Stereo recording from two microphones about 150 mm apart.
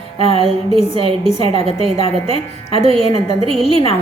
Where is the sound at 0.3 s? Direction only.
40° right (ahead or behind).